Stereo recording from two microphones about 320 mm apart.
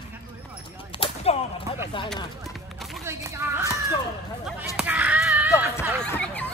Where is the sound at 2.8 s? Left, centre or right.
Centre.